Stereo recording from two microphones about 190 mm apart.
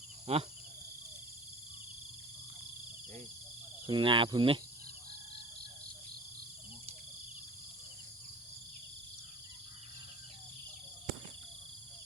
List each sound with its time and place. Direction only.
0.3 s speech: 35° right (ahead or behind)
3.8 s cricket: 25° right (ahead or behind)